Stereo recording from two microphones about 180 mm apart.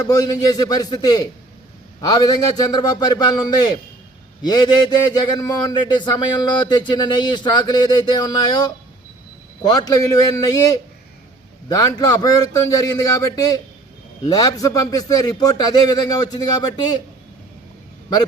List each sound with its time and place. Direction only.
0.0 s speech: 20° left (ahead or behind)
11.7 s speech: 20° left (ahead or behind)